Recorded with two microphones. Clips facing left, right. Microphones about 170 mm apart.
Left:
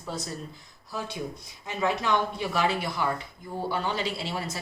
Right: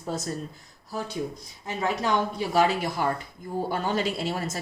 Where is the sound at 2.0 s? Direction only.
40° right (ahead or behind).